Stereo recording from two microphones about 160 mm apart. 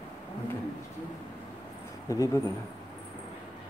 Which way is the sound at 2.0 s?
20° left (ahead or behind).